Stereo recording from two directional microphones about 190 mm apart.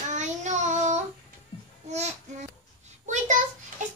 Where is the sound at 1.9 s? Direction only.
35° right (ahead or behind).